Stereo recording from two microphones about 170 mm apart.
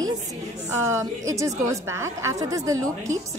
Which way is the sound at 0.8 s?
15° right (ahead or behind).